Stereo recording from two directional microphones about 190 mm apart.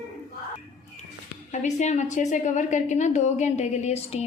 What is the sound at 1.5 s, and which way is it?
A woman's voice, 40° left (ahead or behind).